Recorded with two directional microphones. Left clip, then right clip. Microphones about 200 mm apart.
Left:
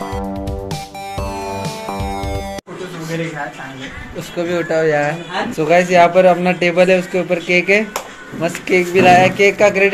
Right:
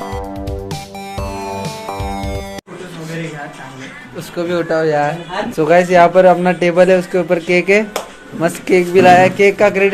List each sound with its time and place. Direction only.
0.0 s music: centre (ahead or behind)
4.4 s a man's voice: 20° right (ahead or behind)